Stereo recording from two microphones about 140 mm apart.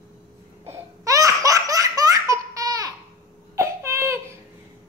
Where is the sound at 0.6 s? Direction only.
20° right (ahead or behind).